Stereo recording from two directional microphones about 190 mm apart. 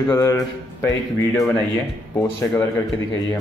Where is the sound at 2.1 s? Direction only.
15° left (ahead or behind).